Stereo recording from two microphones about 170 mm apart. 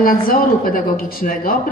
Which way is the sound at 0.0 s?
55° left (ahead or behind).